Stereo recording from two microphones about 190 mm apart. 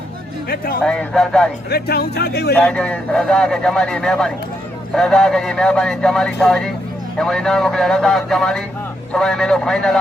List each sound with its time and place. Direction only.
0.4 s speech: 50° left (ahead or behind)
0.9 s speech: 5° left (ahead or behind)
1.7 s speech: 55° left (ahead or behind)
2.6 s speech: 5° left (ahead or behind)